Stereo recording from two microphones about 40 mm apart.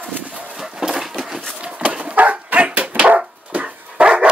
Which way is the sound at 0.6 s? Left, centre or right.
Centre.